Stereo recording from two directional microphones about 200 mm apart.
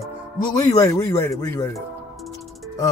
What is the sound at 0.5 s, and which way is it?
A man's voice, 20° left (ahead or behind).